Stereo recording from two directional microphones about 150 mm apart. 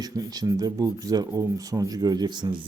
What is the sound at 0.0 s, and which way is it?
A man's voice, 25° right (ahead or behind).